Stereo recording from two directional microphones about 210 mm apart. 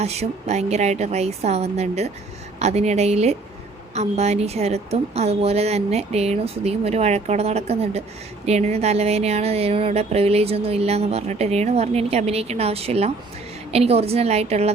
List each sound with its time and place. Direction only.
0.0 s a woman's voice: 30° right (ahead or behind)